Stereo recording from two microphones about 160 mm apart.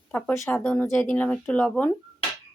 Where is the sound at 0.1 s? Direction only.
10° left (ahead or behind).